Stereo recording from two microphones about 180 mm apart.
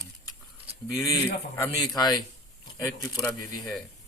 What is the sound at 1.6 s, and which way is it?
Speech, 20° left (ahead or behind).